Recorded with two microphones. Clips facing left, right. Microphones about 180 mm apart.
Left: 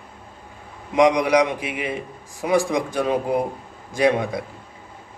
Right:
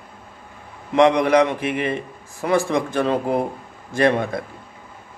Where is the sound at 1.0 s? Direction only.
15° left (ahead or behind).